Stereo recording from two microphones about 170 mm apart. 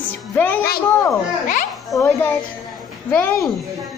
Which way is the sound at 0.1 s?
10° left (ahead or behind).